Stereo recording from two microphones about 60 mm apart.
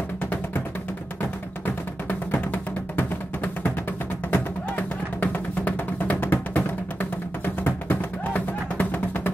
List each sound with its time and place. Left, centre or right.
2.0 s music: left
4.3 s music: left